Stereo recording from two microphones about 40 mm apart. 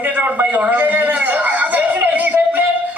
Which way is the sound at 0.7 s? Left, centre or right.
Right.